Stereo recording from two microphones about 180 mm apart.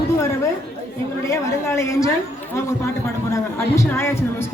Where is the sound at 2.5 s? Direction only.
15° left (ahead or behind).